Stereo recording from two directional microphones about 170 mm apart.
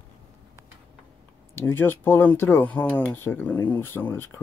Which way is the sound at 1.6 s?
15° left (ahead or behind).